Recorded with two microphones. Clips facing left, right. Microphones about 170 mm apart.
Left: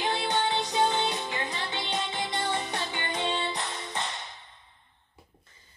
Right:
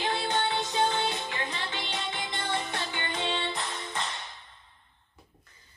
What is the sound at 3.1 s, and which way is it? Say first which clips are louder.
Music: left 2 dB; 20° left (ahead or behind).